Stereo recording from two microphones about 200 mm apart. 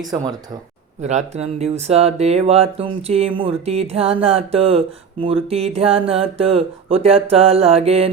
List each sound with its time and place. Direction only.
0.1 s speech: 20° right (ahead or behind)
1.0 s speech: 35° right (ahead or behind)